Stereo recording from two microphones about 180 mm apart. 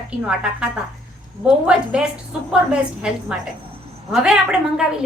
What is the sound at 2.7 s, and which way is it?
Speech, 5° right (ahead or behind).